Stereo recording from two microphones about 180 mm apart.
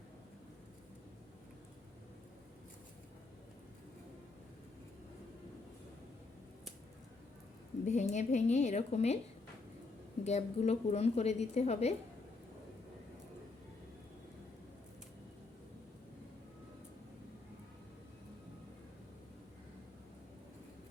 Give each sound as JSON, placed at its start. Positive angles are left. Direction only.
{"t": 7.9, "sound": "a woman's voice", "side_deg": 40}
{"t": 10.2, "sound": "a woman's voice", "side_deg": 40}